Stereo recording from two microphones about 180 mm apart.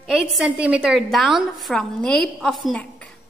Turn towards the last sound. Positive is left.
turn(degrees=5)  # may be behind; listen again after turning